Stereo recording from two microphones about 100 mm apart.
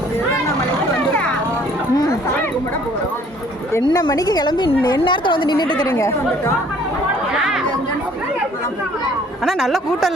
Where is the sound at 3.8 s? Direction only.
45° left (ahead or behind).